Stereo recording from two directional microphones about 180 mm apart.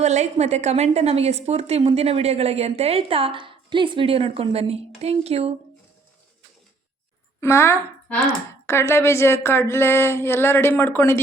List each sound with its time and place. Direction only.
0.0 s a woman's voice: 40° right (ahead or behind)
7.4 s a woman's voice: 15° left (ahead or behind)
9.0 s a sound: 15° left (ahead or behind)